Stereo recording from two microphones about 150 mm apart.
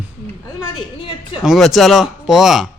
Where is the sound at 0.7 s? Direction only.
35° left (ahead or behind).